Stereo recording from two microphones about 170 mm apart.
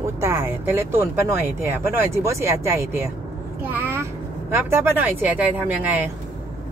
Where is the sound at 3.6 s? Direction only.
10° right (ahead or behind).